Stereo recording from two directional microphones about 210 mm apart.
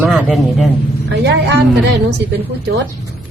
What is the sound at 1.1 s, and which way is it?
Speech, 55° right (ahead or behind).